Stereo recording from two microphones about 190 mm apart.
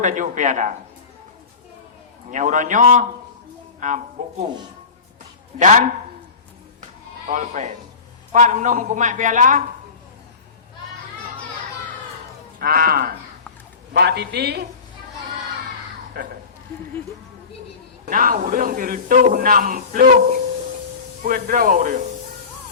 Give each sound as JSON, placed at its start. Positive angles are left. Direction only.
{"t": 0.0, "sound": "speech", "side_deg": -40}
{"t": 2.3, "sound": "speech", "side_deg": -40}
{"t": 5.5, "sound": "speech", "side_deg": -40}
{"t": 7.3, "sound": "speech", "side_deg": -40}
{"t": 12.5, "sound": "a man's voice", "side_deg": -50}
{"t": 18.1, "sound": "a man's voice", "side_deg": -50}
{"t": 21.2, "sound": "a man's voice", "side_deg": -45}